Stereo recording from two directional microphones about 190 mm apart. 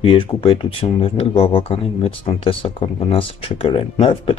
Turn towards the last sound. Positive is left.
turn(degrees=30)  # may be behind; listen again after turning